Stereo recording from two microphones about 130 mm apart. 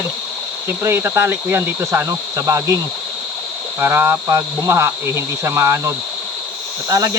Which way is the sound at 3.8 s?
15° right (ahead or behind).